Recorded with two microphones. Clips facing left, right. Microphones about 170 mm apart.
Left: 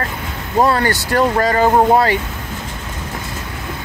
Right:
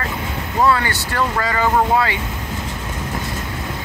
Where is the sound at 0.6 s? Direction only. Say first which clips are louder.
Left 3 dB; 40° left (ahead or behind).